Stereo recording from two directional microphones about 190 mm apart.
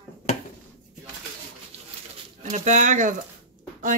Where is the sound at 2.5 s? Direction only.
40° right (ahead or behind).